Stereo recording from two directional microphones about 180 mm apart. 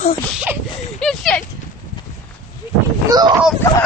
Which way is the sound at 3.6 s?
15° left (ahead or behind).